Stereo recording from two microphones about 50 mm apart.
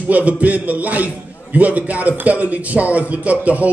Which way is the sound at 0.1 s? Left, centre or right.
Right.